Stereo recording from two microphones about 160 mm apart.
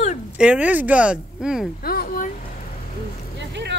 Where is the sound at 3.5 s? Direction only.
90° right.